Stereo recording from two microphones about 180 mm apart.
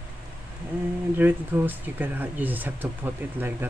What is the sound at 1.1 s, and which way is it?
Speech, 10° right (ahead or behind).